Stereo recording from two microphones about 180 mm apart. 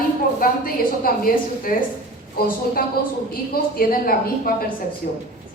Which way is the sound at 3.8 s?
55° left (ahead or behind).